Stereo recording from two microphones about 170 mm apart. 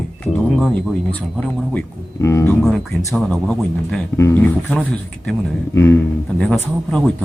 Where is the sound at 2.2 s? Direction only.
15° left (ahead or behind).